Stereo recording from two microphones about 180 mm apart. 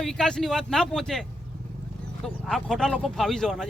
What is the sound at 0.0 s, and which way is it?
Speech, 5° left (ahead or behind).